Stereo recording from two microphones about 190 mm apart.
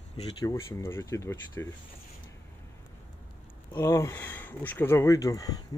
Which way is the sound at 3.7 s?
15° left (ahead or behind).